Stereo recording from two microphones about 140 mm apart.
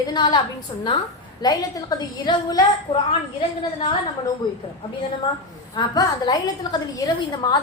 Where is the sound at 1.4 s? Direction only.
30° left (ahead or behind).